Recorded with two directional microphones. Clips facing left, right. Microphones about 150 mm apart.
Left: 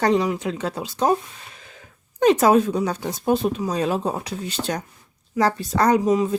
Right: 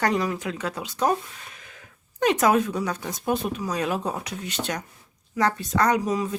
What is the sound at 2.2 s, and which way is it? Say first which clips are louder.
A woman's voice: left 5 dB; 30° left (ahead or behind).